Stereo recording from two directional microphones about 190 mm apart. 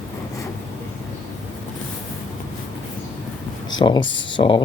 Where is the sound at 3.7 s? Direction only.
25° left (ahead or behind).